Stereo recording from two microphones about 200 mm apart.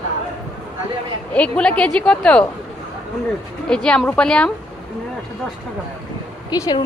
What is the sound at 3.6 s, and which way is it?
Speech, 5° left (ahead or behind).